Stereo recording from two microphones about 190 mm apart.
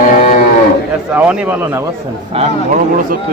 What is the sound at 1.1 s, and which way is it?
Speech, 10° right (ahead or behind).